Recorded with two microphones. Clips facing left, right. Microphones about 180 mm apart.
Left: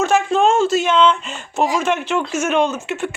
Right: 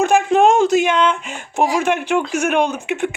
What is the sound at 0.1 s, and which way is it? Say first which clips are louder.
Speech: right 2 dB; 15° right (ahead or behind).